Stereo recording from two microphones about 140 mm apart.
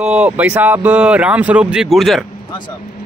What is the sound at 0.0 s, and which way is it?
Speech, 5° right (ahead or behind).